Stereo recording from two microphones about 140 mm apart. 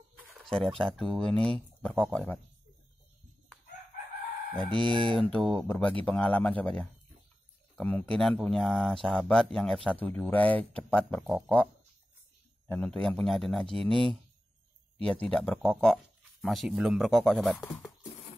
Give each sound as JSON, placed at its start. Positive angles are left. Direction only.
{"t": 0.3, "sound": "a sound", "side_deg": 5}
{"t": 0.7, "sound": "speech", "side_deg": 5}
{"t": 4.6, "sound": "chicken", "side_deg": -35}
{"t": 5.2, "sound": "speech", "side_deg": 5}
{"t": 15.0, "sound": "speech", "side_deg": 5}